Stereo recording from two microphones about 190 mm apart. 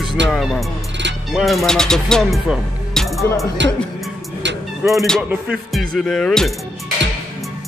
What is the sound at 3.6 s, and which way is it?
Speech, 70° right (ahead or behind).